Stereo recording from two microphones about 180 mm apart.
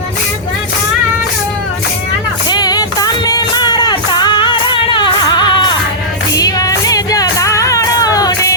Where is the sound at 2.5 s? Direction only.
20° left (ahead or behind).